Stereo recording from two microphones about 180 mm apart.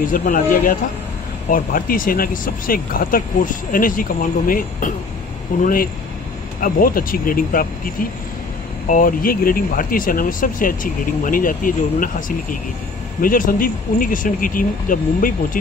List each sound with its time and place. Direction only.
0.1 s speech: 50° left (ahead or behind)